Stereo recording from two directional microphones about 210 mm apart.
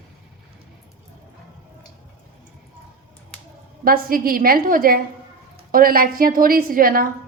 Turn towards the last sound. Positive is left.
turn(degrees=-45)  # may be behind; listen again after turning